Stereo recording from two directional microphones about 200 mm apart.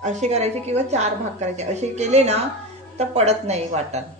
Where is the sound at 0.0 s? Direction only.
35° right (ahead or behind).